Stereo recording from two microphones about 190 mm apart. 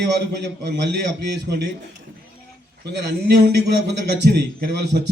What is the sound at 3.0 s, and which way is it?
A man's voice, 60° right (ahead or behind).